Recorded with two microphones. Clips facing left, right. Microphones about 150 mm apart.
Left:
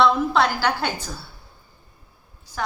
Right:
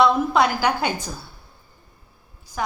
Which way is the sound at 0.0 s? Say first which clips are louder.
Right 1 dB; 10° right (ahead or behind).